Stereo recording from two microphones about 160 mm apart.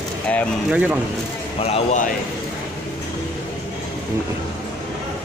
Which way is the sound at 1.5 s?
40° left (ahead or behind).